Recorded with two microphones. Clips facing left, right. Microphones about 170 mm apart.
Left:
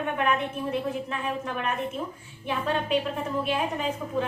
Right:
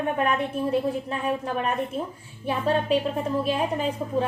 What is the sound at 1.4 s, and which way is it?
A woman's voice, 35° right (ahead or behind).